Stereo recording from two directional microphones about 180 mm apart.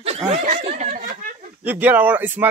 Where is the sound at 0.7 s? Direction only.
45° right (ahead or behind).